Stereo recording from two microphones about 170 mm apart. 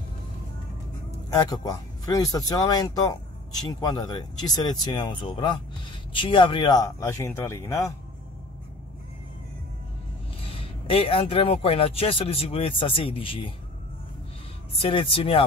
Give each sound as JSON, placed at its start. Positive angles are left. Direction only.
{"t": 1.3, "sound": "speech", "side_deg": 20}
{"t": 10.6, "sound": "speech", "side_deg": 35}
{"t": 14.8, "sound": "speech", "side_deg": 35}